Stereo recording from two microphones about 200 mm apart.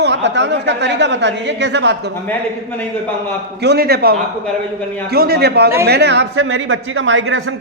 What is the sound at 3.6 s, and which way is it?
A man's voice, 55° right (ahead or behind).